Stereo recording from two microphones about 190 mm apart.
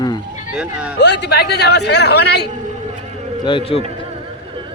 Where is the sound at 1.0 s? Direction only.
65° left (ahead or behind).